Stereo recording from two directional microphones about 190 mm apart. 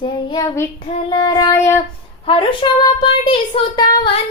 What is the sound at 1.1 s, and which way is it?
Child singing, 20° left (ahead or behind).